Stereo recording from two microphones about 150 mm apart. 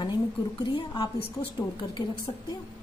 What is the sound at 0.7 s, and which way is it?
A woman's voice, 35° left (ahead or behind).